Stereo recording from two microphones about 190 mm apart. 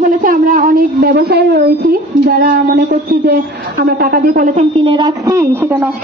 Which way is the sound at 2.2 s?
55° right (ahead or behind).